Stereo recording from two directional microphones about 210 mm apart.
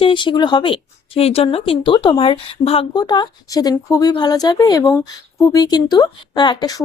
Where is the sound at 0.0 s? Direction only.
20° left (ahead or behind).